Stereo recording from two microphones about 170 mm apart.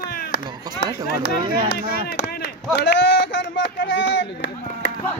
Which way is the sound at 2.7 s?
80° left.